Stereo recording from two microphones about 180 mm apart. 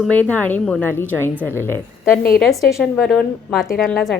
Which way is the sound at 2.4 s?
Centre (ahead or behind).